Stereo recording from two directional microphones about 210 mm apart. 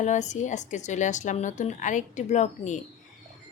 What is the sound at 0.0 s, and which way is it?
A woman's voice, 35° left (ahead or behind).